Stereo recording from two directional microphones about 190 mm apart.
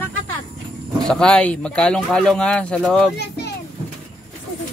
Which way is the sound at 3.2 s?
60° left (ahead or behind).